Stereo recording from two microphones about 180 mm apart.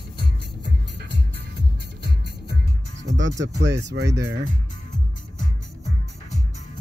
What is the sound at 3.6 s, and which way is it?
Speech, 70° right (ahead or behind).